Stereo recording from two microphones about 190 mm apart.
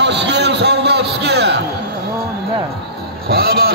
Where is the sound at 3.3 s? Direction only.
55° right (ahead or behind).